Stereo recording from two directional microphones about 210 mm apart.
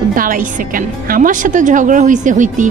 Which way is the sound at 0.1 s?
40° right (ahead or behind).